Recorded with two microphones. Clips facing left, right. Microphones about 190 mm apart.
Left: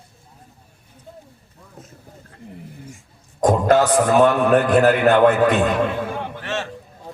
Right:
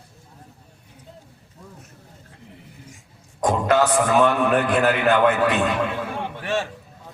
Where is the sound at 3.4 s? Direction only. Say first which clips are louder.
Left 3 dB; 40° left (ahead or behind).